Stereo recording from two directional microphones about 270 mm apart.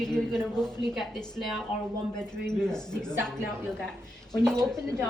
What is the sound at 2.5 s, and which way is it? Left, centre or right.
Speech, centre.